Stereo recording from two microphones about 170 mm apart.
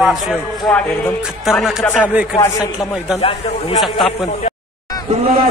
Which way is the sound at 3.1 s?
35° left (ahead or behind).